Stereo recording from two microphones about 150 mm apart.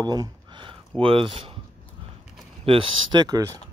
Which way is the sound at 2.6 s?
35° right (ahead or behind).